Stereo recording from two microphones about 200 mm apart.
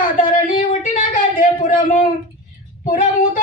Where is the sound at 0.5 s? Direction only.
35° left (ahead or behind).